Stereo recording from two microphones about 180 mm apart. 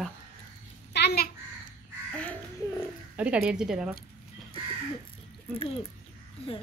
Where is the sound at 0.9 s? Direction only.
65° left (ahead or behind).